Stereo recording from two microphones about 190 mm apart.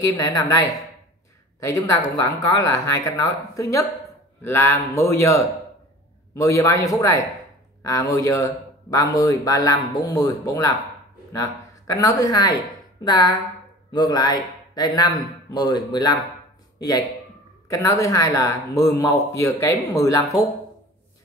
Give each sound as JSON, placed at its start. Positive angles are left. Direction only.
{"t": 0.0, "sound": "a man's voice", "side_deg": 20}
{"t": 11.9, "sound": "a man's voice", "side_deg": 15}